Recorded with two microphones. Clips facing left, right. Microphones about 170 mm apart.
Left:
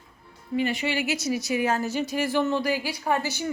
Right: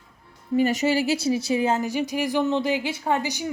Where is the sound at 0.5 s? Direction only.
40° right (ahead or behind).